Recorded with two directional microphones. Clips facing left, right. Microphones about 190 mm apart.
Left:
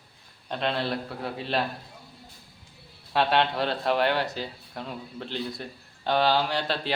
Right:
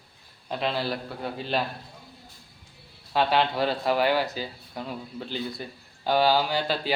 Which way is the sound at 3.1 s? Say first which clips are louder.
Even; centre (ahead or behind).